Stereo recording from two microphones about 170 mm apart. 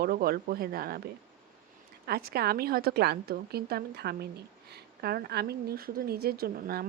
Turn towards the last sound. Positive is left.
turn(degrees=-65)  # may be behind; listen again after turning